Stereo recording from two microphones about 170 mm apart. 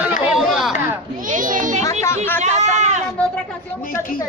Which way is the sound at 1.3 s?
50° right (ahead or behind).